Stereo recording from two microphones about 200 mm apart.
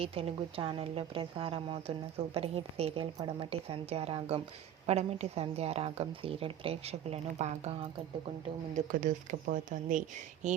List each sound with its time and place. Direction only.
0.0 s a woman's voice: 30° right (ahead or behind)
8.7 s speech: 40° right (ahead or behind)